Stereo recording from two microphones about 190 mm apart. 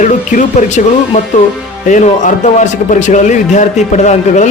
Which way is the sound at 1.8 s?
40° left (ahead or behind).